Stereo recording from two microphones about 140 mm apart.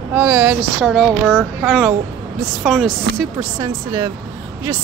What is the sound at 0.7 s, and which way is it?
A woman's voice, centre (ahead or behind).